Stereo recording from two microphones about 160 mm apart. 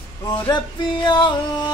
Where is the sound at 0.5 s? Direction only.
30° left (ahead or behind).